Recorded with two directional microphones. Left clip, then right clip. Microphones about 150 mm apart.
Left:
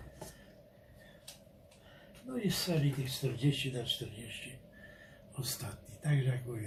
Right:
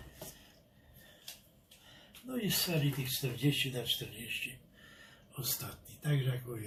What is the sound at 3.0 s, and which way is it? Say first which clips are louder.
Speech: right 1 dB; 5° left (ahead or behind).